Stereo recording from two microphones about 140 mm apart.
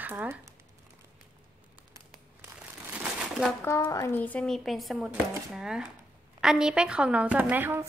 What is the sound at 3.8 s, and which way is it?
Speech, 25° left (ahead or behind).